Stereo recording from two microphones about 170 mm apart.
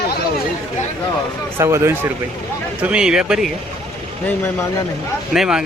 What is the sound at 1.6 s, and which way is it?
Speech, 15° right (ahead or behind).